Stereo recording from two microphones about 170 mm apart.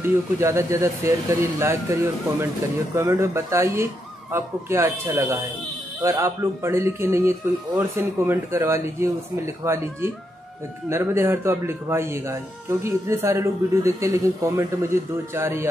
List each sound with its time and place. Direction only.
0.0 s a man's voice: 15° right (ahead or behind)
10.9 s a man's voice: 15° right (ahead or behind)